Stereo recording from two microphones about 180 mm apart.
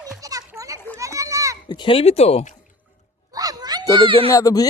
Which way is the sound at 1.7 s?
30° left (ahead or behind).